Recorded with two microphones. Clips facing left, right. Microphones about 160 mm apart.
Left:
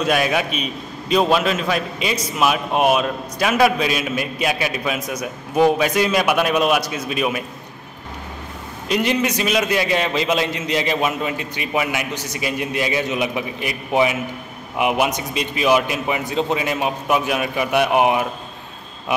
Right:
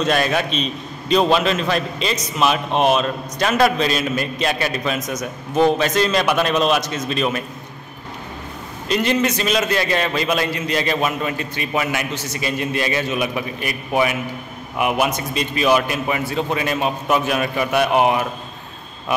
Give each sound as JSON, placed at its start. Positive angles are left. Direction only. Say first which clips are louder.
{"t": 0.0, "sound": "a man's voice", "louder": "even", "side_deg": 5}
{"t": 8.8, "sound": "a man's voice", "louder": "right 1 dB", "side_deg": 15}